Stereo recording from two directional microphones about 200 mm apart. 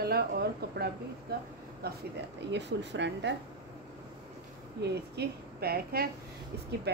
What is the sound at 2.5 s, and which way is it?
Speech, 60° right (ahead or behind).